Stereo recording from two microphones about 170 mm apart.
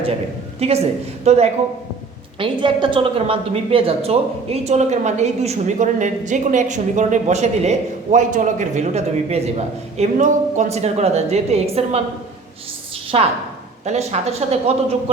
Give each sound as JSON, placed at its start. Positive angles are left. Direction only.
{"t": 0.6, "sound": "a woman's voice", "side_deg": -40}
{"t": 2.4, "sound": "a woman's voice", "side_deg": -30}
{"t": 13.1, "sound": "a woman's voice", "side_deg": -35}